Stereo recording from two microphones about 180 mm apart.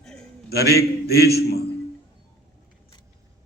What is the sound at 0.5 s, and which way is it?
A man's voice, 60° left (ahead or behind).